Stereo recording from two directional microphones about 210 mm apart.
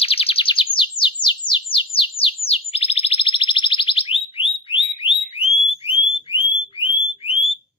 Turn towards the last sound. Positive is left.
turn(degrees=25)  # may be behind; listen again after turning